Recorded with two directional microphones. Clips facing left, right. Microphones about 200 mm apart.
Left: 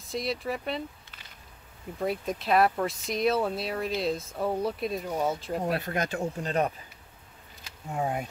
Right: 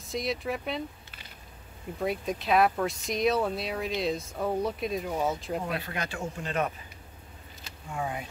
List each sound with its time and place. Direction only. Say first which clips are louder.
0.0 s speech: even; centre (ahead or behind)
2.0 s speech: even; centre (ahead or behind)
5.7 s speech: left 5 dB; 45° left (ahead or behind)
7.9 s speech: left 4 dB; 45° left (ahead or behind)